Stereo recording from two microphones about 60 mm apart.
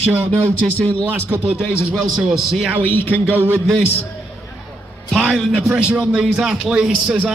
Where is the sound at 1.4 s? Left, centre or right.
Centre.